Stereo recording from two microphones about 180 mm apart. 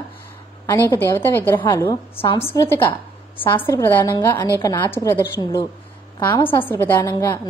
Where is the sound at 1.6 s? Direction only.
20° left (ahead or behind).